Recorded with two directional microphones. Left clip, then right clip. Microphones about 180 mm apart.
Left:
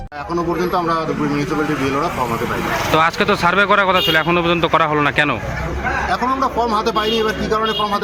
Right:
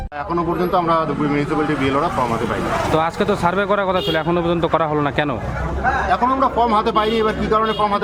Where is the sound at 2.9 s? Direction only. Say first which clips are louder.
Left 6 dB; 5° right (ahead or behind).